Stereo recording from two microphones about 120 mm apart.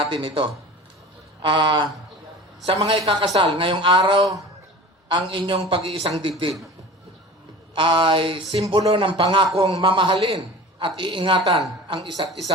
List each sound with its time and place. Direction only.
0.0 s a man's voice: 45° right (ahead or behind)
7.8 s a man's voice: 45° right (ahead or behind)